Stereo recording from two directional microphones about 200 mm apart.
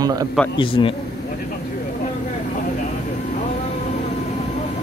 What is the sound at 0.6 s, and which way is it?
Speech, 25° left (ahead or behind).